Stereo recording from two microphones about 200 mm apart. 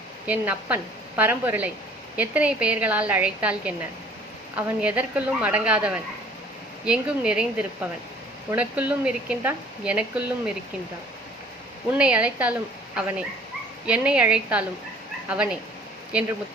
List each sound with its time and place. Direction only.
0.3 s speech: 10° right (ahead or behind)
11.9 s speech: 5° right (ahead or behind)